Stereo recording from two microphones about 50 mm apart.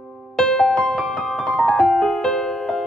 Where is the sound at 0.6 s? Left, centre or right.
Left.